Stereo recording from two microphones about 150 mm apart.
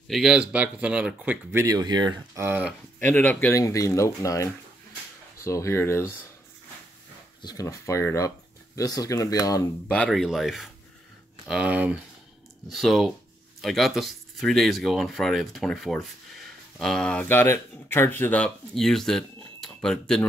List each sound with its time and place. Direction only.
0.1 s speech: 5° right (ahead or behind)
1.6 s speech: 25° right (ahead or behind)
2.4 s speech: 10° right (ahead or behind)
3.0 s speech: 15° left (ahead or behind)
7.4 s speech: 20° left (ahead or behind)
9.9 s speech: 5° left (ahead or behind)